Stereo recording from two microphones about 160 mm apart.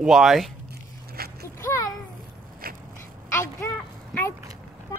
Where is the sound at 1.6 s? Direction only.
20° left (ahead or behind).